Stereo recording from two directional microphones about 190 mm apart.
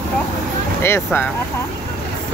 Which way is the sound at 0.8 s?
10° left (ahead or behind).